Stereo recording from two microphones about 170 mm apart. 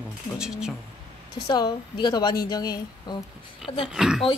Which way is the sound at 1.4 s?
25° left (ahead or behind).